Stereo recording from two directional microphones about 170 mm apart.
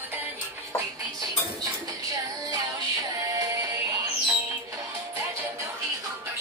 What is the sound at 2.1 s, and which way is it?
Music, 20° right (ahead or behind).